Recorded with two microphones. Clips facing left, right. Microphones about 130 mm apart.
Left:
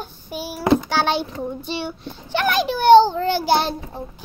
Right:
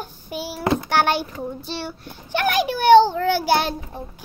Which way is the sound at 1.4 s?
Centre (ahead or behind).